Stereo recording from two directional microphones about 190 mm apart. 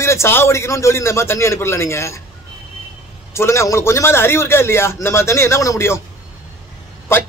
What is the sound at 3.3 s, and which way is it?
A man's voice, 15° left (ahead or behind).